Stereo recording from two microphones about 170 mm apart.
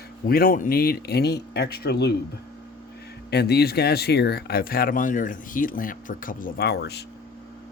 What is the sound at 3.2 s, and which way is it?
Speech, 75° left (ahead or behind).